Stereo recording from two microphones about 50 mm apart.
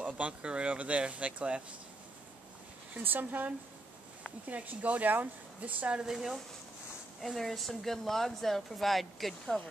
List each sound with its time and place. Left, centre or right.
0.0 s speech: right
3.0 s speech: right
6.0 s speech: centre